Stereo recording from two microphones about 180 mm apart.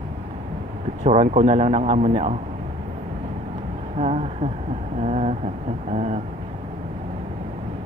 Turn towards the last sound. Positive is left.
turn(degrees=-35)  # may be behind; listen again after turning